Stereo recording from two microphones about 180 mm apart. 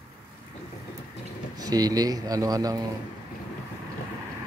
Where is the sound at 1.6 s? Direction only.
20° right (ahead or behind).